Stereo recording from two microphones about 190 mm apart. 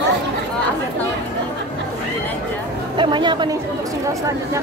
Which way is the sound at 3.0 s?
25° right (ahead or behind).